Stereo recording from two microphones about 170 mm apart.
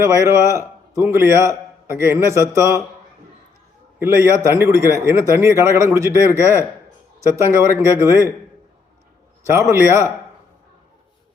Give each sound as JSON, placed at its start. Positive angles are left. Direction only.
{"t": 0.0, "sound": "a man's voice", "side_deg": -15}
{"t": 4.0, "sound": "a man's voice", "side_deg": -15}
{"t": 9.5, "sound": "a man's voice", "side_deg": -15}